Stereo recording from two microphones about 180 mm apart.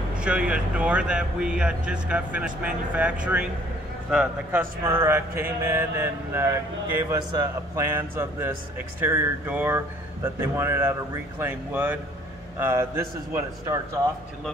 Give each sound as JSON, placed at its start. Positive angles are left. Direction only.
{"t": 0.1, "sound": "speech", "side_deg": -5}